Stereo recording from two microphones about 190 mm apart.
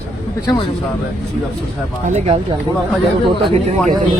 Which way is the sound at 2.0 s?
35° right (ahead or behind).